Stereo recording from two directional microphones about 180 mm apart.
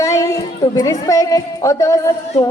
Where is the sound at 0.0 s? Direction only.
15° left (ahead or behind).